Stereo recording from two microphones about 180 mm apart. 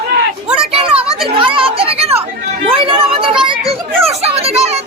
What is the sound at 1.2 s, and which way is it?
A child's voice, 30° right (ahead or behind).